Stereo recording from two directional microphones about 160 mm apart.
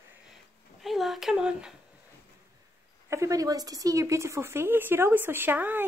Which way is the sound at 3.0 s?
20° right (ahead or behind).